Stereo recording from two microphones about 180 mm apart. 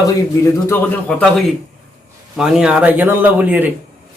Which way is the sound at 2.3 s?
5° right (ahead or behind).